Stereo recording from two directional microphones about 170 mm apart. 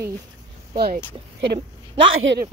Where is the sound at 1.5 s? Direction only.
30° right (ahead or behind).